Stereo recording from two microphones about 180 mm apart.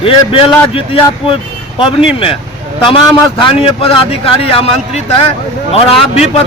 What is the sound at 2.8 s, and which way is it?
A man's voice, 25° left (ahead or behind).